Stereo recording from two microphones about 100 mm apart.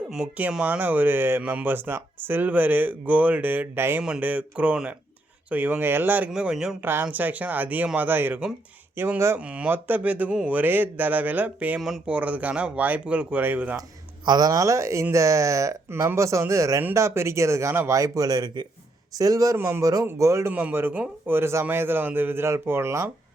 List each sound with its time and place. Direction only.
0.1 s speech: 10° right (ahead or behind)
6.3 s a man's voice: 5° right (ahead or behind)
6.8 s speech: 20° right (ahead or behind)
9.4 s speech: 15° right (ahead or behind)
14.3 s speech: 40° right (ahead or behind)
19.5 s speech: 25° right (ahead or behind)
19.8 s speech: 35° right (ahead or behind)
20.5 s speech: 15° right (ahead or behind)